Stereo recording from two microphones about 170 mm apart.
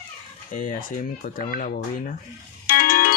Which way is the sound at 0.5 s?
50° left (ahead or behind).